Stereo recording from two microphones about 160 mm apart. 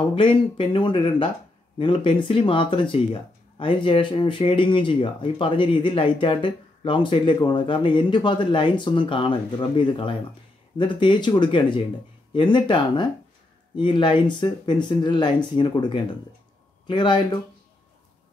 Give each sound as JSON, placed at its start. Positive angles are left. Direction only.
{"t": 0.1, "sound": "speech", "side_deg": 35}